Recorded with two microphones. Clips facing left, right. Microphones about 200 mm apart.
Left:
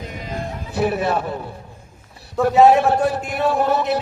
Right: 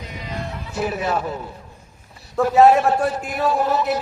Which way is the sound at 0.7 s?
65° left (ahead or behind).